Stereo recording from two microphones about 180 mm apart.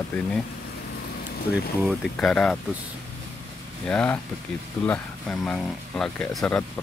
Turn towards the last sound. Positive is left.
turn(degrees=5)  # may be behind; listen again after turning